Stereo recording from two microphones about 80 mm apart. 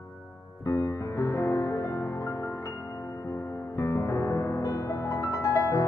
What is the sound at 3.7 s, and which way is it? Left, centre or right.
Music, left.